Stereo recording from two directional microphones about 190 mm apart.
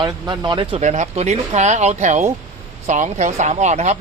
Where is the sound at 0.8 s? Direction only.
35° right (ahead or behind).